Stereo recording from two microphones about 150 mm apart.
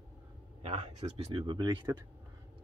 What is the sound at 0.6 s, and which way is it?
Speech, 50° right (ahead or behind).